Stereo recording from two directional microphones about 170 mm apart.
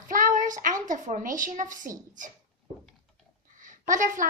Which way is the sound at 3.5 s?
50° right (ahead or behind).